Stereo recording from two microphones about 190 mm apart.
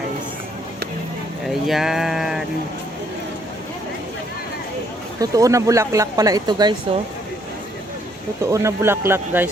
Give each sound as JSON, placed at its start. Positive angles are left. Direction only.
{"t": 1.5, "sound": "speech", "side_deg": 0}
{"t": 5.2, "sound": "speech", "side_deg": -15}
{"t": 8.4, "sound": "speech", "side_deg": -15}